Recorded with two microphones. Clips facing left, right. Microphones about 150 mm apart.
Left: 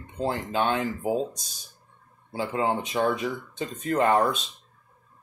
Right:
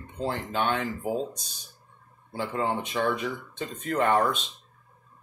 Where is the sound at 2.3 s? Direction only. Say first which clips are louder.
Left 2 dB; 15° left (ahead or behind).